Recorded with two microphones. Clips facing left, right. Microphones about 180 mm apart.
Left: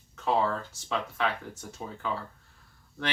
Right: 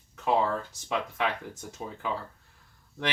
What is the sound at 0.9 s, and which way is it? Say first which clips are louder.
Speech: even; 15° right (ahead or behind).